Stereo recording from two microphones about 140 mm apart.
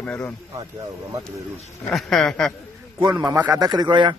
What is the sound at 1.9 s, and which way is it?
Speech, 5° left (ahead or behind).